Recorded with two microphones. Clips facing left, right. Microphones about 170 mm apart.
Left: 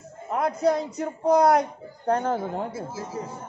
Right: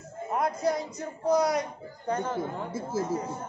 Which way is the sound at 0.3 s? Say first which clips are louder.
Left 4 dB; 65° left (ahead or behind).